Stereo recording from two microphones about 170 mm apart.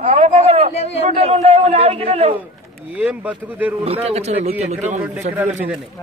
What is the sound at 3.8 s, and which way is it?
A man's voice, 35° right (ahead or behind).